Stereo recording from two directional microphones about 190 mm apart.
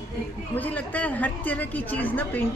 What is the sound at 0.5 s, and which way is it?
A woman's voice, 10° left (ahead or behind).